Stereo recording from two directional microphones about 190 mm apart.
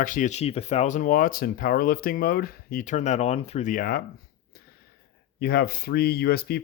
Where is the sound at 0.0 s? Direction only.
45° left (ahead or behind).